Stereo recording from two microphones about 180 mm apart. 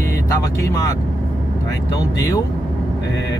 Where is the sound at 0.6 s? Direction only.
15° left (ahead or behind).